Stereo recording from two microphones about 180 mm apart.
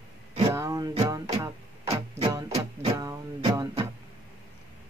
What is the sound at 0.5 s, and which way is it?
Music, 20° right (ahead or behind).